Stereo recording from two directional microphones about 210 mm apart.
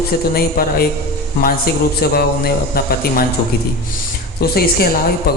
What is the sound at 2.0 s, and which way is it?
A woman's voice, 45° left (ahead or behind).